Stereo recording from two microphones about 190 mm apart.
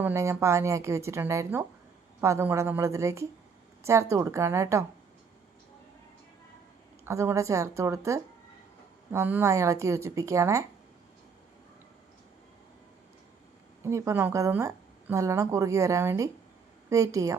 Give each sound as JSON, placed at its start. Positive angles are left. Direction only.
{"t": 0.0, "sound": "a woman's voice", "side_deg": -15}
{"t": 7.0, "sound": "a woman's voice", "side_deg": -15}
{"t": 13.8, "sound": "a woman's voice", "side_deg": -15}